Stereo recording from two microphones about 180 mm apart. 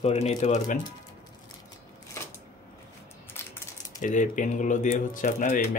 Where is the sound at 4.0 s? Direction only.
45° left (ahead or behind).